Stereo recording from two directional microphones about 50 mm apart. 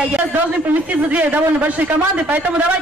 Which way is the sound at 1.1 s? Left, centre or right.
Right.